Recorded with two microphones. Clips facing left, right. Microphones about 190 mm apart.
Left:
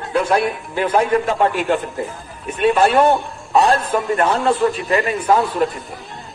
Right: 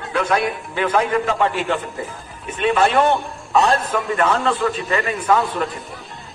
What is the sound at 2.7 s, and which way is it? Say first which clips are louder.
A man's voice: left 1 dB; 35° left (ahead or behind).